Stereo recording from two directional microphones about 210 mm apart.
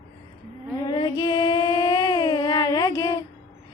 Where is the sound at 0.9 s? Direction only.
20° left (ahead or behind).